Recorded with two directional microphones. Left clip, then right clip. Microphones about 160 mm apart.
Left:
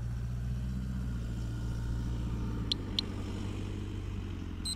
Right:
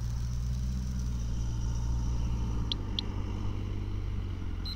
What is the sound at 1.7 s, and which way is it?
Vehicle, 35° right (ahead or behind).